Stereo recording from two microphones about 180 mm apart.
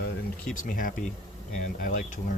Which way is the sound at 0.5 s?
50° left (ahead or behind).